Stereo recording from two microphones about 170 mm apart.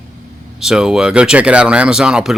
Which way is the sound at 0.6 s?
5° right (ahead or behind).